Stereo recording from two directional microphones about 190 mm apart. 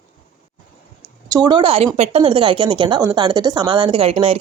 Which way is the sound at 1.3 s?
20° right (ahead or behind).